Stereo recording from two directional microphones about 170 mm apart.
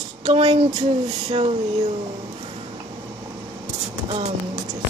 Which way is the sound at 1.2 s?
35° right (ahead or behind).